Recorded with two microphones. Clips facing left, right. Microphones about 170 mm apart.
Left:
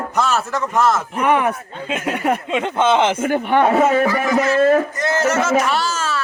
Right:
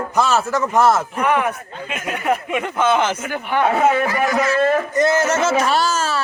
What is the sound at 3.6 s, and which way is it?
Speech, 40° left (ahead or behind).